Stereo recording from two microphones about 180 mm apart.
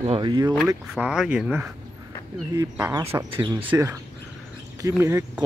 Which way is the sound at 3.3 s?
30° right (ahead or behind).